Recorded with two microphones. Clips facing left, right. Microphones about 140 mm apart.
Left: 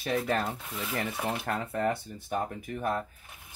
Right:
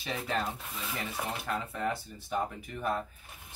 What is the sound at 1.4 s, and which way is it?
Speech, 55° left (ahead or behind).